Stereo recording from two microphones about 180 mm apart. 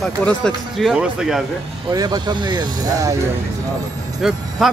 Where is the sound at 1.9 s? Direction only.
20° right (ahead or behind).